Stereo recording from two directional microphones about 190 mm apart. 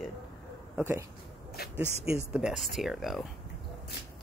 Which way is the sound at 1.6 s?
55° left (ahead or behind).